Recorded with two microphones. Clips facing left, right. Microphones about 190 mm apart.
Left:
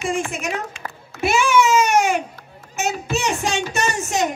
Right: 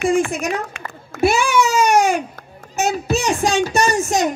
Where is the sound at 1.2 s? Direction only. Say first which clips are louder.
Right 1 dB; 35° right (ahead or behind).